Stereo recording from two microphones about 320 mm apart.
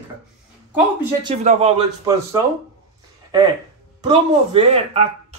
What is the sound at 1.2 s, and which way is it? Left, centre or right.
Speech, centre.